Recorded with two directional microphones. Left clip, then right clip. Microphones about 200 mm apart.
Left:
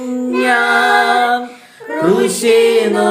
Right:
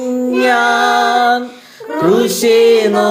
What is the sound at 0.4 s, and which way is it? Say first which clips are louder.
Music: even; 20° right (ahead or behind).